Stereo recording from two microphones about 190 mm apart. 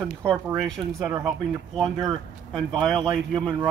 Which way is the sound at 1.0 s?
15° right (ahead or behind).